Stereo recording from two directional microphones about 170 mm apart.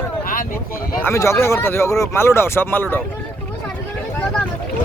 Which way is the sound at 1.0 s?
15° left (ahead or behind).